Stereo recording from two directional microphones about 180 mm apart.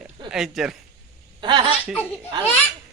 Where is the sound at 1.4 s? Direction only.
25° right (ahead or behind).